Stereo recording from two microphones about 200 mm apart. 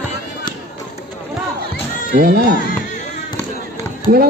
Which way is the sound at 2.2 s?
45° right (ahead or behind).